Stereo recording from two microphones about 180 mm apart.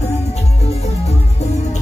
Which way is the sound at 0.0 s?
35° left (ahead or behind).